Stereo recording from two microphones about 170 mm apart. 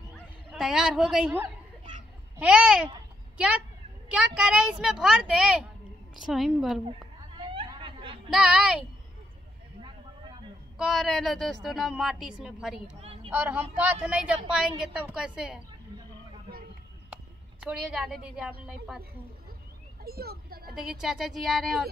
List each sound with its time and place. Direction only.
0.1 s fowl: 5° right (ahead or behind)
2.3 s speech: 5° right (ahead or behind)
6.9 s chatter: 30° right (ahead or behind)
8.3 s speech: centre (ahead or behind)
9.8 s a sound: 25° right (ahead or behind)
10.8 s speech: centre (ahead or behind)
13.0 s a sound: 35° right (ahead or behind)
13.3 s speech: 10° right (ahead or behind)
17.1 s a woman's voice: 5° right (ahead or behind)
20.0 s speech: 65° right (ahead or behind)
20.7 s speech: 5° right (ahead or behind)